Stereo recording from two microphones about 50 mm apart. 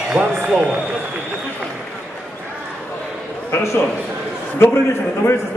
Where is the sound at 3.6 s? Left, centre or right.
Left.